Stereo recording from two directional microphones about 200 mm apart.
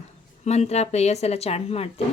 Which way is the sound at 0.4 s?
35° left (ahead or behind).